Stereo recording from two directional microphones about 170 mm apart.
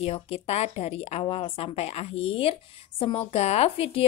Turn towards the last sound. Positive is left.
turn(degrees=35)  # may be behind; listen again after turning